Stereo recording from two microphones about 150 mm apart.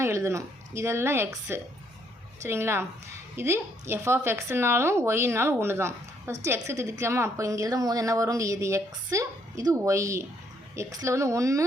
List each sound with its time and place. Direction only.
0.0 s a woman's voice: 20° right (ahead or behind)